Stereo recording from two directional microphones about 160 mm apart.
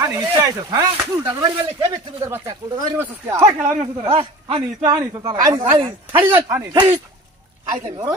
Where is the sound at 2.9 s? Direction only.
20° right (ahead or behind).